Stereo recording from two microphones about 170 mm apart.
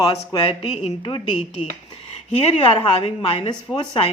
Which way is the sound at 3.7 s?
5° left (ahead or behind).